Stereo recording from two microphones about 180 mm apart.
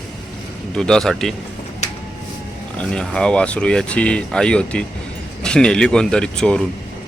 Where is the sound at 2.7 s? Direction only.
5° left (ahead or behind).